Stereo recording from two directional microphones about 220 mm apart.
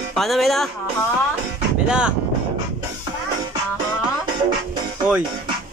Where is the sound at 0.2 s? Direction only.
Centre (ahead or behind).